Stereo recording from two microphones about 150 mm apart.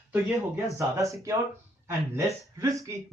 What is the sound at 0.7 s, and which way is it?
Speech, 20° right (ahead or behind).